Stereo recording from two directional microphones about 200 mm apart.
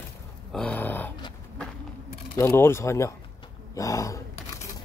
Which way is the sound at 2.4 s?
10° left (ahead or behind).